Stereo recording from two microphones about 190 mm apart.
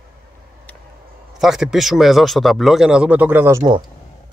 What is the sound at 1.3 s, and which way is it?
Speech, centre (ahead or behind).